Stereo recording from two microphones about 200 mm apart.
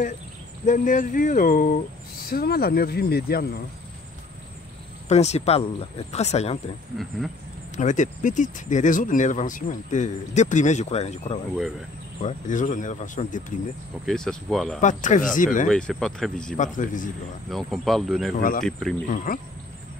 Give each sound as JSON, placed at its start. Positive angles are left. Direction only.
{"t": 0.7, "sound": "speech", "side_deg": 40}
{"t": 5.0, "sound": "speech", "side_deg": 35}
{"t": 7.7, "sound": "speech", "side_deg": 40}
{"t": 14.0, "sound": "speech", "side_deg": 0}
{"t": 14.8, "sound": "speech", "side_deg": 40}
{"t": 15.7, "sound": "speech", "side_deg": 0}
{"t": 16.5, "sound": "speech", "side_deg": 40}
{"t": 17.5, "sound": "speech", "side_deg": 0}
{"t": 18.3, "sound": "speech", "side_deg": 45}
{"t": 18.7, "sound": "speech", "side_deg": 0}
{"t": 19.0, "sound": "speech", "side_deg": 40}